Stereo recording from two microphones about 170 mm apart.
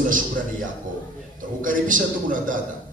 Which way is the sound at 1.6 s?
50° right (ahead or behind).